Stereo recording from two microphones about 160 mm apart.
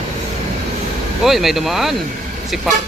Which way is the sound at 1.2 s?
Centre (ahead or behind).